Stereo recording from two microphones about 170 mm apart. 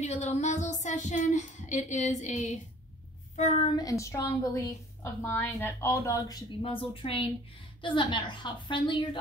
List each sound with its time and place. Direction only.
0.0 s child singing: 40° left (ahead or behind)
3.6 s a woman's voice: 20° left (ahead or behind)
6.6 s a woman's voice: 30° left (ahead or behind)